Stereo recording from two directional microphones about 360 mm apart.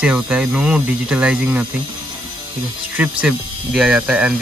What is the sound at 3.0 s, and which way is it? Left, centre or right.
Speech, centre.